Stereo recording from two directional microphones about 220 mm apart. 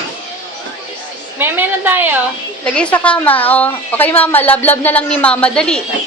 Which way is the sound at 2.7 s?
5° left (ahead or behind).